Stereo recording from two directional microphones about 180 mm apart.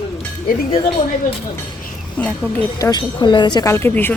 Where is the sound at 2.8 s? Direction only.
20° left (ahead or behind).